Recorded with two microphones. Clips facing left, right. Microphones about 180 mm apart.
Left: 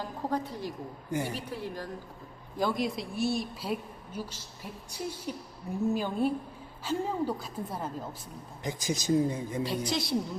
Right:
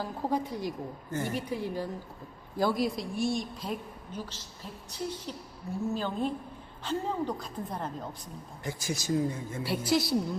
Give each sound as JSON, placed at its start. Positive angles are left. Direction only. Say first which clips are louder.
{"t": 0.0, "sound": "a woman's voice", "louder": "right 2 dB", "side_deg": -10}
{"t": 1.1, "sound": "a woman's voice", "louder": "left 2 dB", "side_deg": 15}
{"t": 1.5, "sound": "a woman's voice", "louder": "right 4 dB", "side_deg": -10}
{"t": 8.6, "sound": "a woman's voice", "louder": "left 3 dB", "side_deg": 20}
{"t": 9.6, "sound": "a woman's voice", "louder": "right 8 dB", "side_deg": -5}